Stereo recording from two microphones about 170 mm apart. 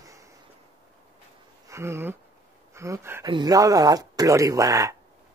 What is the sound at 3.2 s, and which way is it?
Speech, 25° right (ahead or behind).